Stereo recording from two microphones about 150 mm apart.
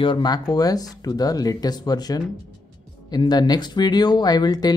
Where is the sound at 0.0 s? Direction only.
30° left (ahead or behind).